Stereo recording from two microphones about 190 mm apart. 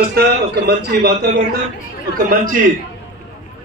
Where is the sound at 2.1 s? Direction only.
45° right (ahead or behind).